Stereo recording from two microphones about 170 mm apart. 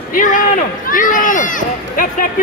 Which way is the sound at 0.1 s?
50° left (ahead or behind).